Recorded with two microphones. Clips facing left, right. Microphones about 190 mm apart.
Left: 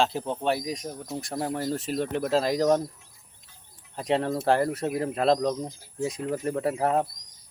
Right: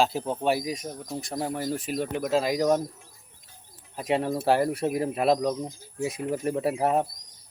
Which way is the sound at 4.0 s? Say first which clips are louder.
Even; 10° right (ahead or behind).